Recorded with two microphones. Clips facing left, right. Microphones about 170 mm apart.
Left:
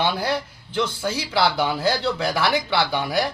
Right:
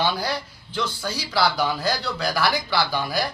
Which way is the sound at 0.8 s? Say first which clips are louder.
Left 4 dB; 20° left (ahead or behind).